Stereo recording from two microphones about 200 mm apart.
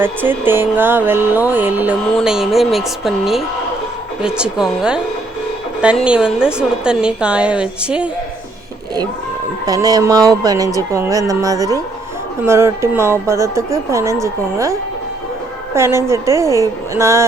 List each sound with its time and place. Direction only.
0.0 s a woman's voice: 10° right (ahead or behind)
9.6 s speech: 20° right (ahead or behind)